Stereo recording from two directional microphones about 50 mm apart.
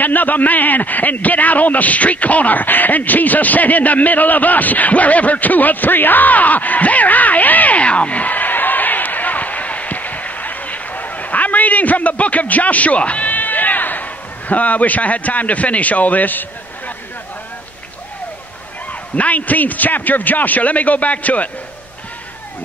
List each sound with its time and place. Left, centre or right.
0.0 s a man's voice: left
18.9 s a man's voice: left